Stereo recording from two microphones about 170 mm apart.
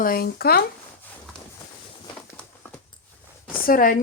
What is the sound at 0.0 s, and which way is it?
Speech, 60° left (ahead or behind).